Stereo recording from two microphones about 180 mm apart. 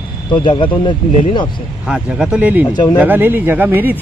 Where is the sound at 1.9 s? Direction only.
5° right (ahead or behind).